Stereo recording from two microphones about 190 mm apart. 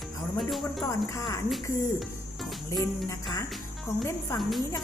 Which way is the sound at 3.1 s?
15° left (ahead or behind).